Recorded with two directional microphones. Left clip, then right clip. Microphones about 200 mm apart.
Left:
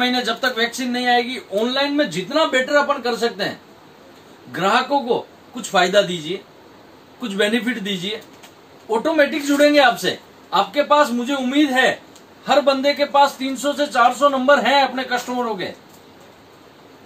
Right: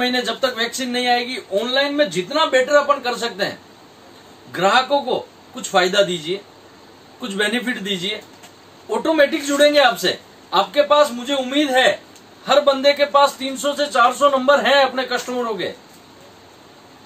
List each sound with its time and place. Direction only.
0.0 s speech: 10° right (ahead or behind)
4.5 s a man's voice: 5° right (ahead or behind)